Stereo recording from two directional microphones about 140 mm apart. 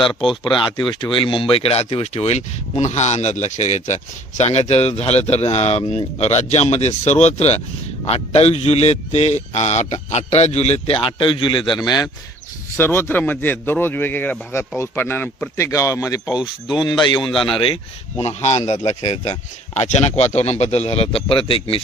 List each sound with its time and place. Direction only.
0.0 s speech: 35° left (ahead or behind)
12.7 s a man's voice: 15° left (ahead or behind); by 21.8 s 40° left (ahead or behind)